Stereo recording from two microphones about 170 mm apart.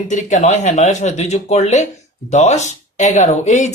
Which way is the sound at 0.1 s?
45° left (ahead or behind).